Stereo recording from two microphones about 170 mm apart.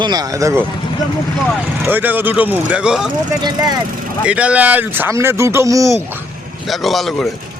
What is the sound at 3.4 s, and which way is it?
Speech, 25° right (ahead or behind).